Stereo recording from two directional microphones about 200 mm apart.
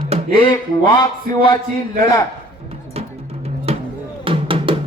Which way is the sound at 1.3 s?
40° right (ahead or behind).